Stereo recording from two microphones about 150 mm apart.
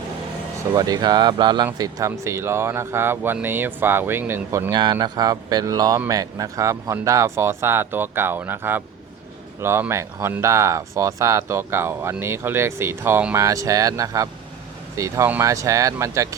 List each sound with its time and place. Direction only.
0.7 s speech: 25° right (ahead or behind)
4.7 s speech: 30° right (ahead or behind)